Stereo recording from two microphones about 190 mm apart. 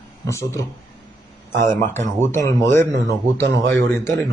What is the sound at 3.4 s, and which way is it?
Speech, 65° right (ahead or behind).